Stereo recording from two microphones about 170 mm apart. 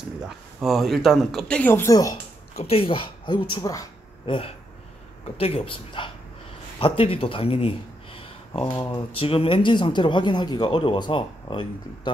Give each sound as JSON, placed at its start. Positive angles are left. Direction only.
{"t": 0.6, "sound": "speech", "side_deg": 0}
{"t": 2.5, "sound": "a woman's voice", "side_deg": 35}